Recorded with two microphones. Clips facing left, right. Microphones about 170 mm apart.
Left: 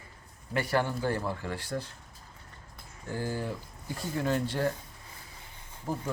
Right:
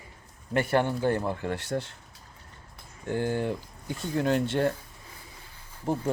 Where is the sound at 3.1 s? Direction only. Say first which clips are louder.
Right 6 dB; 65° right (ahead or behind).